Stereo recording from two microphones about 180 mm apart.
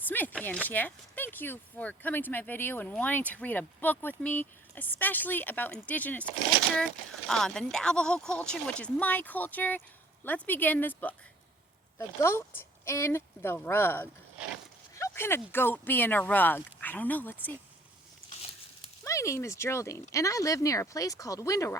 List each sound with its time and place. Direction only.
0.1 s speech: 10° left (ahead or behind)
19.0 s speech: 15° left (ahead or behind)